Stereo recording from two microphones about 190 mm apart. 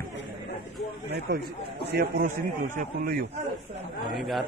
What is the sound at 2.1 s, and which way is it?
A man's voice, 50° right (ahead or behind).